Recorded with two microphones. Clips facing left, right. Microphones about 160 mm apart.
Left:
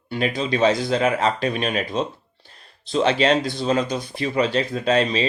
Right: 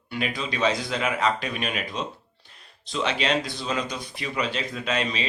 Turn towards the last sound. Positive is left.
turn(degrees=35)  # may be behind; listen again after turning